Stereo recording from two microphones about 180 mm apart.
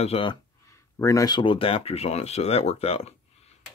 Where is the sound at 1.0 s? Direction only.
20° left (ahead or behind).